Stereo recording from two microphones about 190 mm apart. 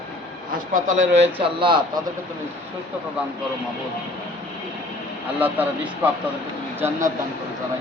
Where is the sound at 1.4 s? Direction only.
25° right (ahead or behind).